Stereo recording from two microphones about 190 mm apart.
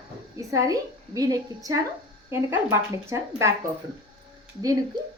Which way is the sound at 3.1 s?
15° right (ahead or behind).